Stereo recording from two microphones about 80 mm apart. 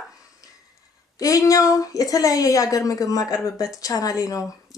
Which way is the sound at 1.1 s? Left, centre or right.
Left.